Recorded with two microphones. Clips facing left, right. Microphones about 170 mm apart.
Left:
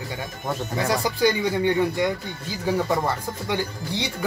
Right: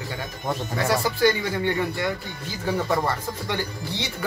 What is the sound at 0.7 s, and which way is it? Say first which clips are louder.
Speech: even; 15° left (ahead or behind).